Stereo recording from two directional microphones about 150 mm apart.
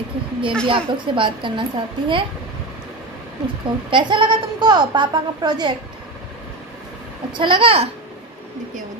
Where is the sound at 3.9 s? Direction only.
30° right (ahead or behind).